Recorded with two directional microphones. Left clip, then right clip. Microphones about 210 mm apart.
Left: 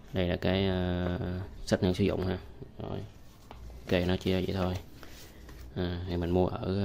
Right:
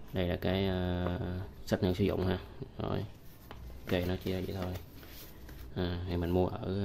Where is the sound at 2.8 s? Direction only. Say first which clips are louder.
Right 3 dB; 15° right (ahead or behind).